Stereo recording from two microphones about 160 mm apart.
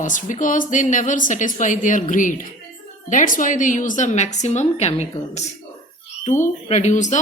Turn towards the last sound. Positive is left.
turn(degrees=50)  # may be behind; listen again after turning